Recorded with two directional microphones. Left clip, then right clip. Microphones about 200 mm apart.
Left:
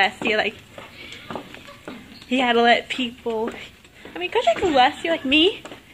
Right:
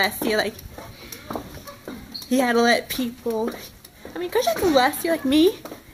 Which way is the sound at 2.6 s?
10° right (ahead or behind).